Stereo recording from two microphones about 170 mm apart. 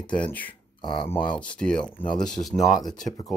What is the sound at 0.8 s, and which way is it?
Speech, 30° left (ahead or behind).